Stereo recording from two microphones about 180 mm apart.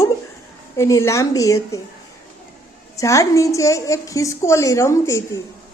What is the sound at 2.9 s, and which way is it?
A woman's voice, 15° left (ahead or behind).